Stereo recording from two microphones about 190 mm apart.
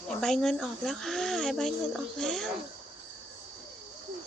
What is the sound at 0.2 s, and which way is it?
Speech, centre (ahead or behind).